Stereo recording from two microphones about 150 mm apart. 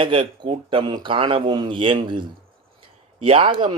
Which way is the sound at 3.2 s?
35° right (ahead or behind).